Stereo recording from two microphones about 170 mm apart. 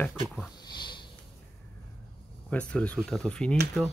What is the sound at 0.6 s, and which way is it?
Sniff, 25° left (ahead or behind).